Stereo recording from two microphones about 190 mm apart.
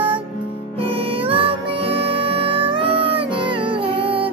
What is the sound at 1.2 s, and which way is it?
Music, 30° right (ahead or behind).